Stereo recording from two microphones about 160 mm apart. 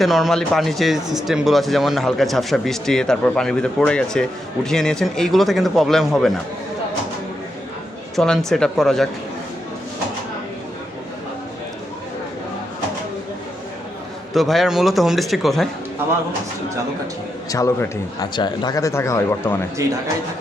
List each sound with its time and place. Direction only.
0.0 s speech: centre (ahead or behind)
8.1 s speech: 5° left (ahead or behind)
14.3 s speech: centre (ahead or behind)
17.5 s a man's voice: 20° left (ahead or behind)